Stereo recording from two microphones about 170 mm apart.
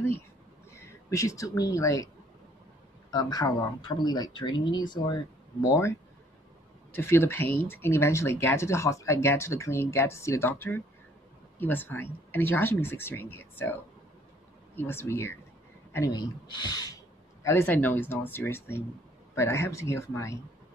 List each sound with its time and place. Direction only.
0.7 s speech: 15° left (ahead or behind)
3.1 s speech: 25° left (ahead or behind)
14.8 s speech: 15° left (ahead or behind)